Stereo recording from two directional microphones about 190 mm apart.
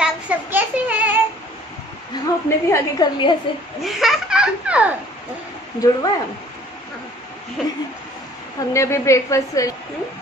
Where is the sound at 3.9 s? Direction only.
Centre (ahead or behind).